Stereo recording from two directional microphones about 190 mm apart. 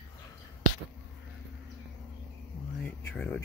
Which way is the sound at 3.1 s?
5° left (ahead or behind).